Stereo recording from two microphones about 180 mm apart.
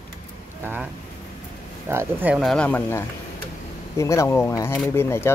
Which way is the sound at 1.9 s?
10° right (ahead or behind).